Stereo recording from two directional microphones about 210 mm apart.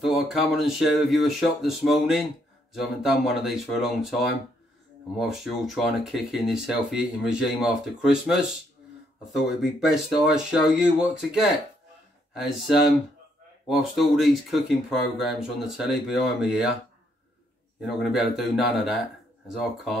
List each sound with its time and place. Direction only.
0.0 s speech: centre (ahead or behind)
5.2 s speech: centre (ahead or behind)
9.5 s speech: centre (ahead or behind)
13.7 s speech: centre (ahead or behind)
17.8 s speech: centre (ahead or behind)